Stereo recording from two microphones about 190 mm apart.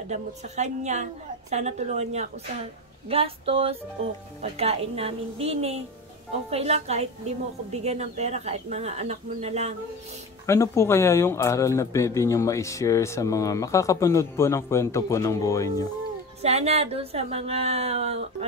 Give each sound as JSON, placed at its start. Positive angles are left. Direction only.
{"t": 0.1, "sound": "a woman's voice", "side_deg": -35}
{"t": 10.4, "sound": "speech", "side_deg": 15}
{"t": 16.4, "sound": "a woman's voice", "side_deg": -35}